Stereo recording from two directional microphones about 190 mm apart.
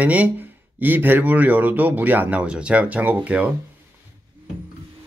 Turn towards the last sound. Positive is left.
turn(degrees=-5)  # may be behind; listen again after turning